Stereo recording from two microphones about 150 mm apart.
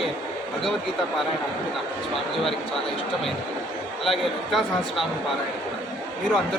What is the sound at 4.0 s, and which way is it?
A man's voice, centre (ahead or behind).